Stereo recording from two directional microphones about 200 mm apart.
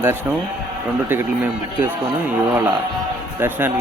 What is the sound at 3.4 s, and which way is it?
Speech, 10° right (ahead or behind).